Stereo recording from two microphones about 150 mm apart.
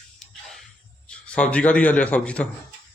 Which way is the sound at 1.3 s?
10° left (ahead or behind).